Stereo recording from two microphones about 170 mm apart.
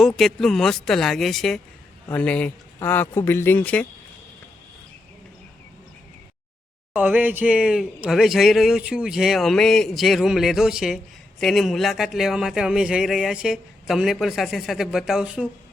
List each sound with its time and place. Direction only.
0.0 s speech: centre (ahead or behind)
6.9 s speech: 10° right (ahead or behind)